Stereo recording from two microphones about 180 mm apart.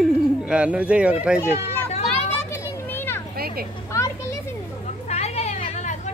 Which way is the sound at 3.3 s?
55° right (ahead or behind).